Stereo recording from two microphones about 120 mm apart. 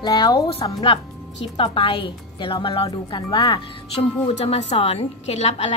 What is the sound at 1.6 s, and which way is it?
A woman's voice, 45° left (ahead or behind).